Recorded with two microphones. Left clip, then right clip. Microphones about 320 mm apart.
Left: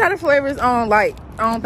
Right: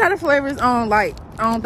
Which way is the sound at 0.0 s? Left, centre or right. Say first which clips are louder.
Left 1 dB; centre.